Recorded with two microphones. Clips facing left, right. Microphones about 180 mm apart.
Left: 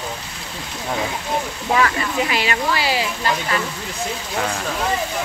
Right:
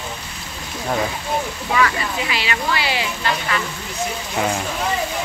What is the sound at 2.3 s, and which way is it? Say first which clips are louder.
Speech: left 2 dB; 45° left (ahead or behind).